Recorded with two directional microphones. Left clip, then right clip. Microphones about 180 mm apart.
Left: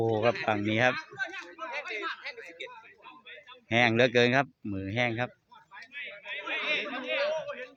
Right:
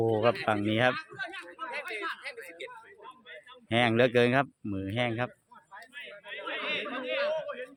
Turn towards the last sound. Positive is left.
turn(degrees=-30)  # may be behind; listen again after turning